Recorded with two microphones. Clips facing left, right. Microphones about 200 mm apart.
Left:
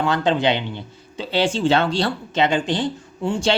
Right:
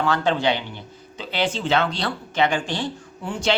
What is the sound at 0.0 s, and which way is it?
Speech, 20° left (ahead or behind).